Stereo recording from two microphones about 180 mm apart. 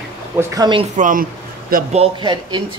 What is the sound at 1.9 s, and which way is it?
Speech, 30° right (ahead or behind).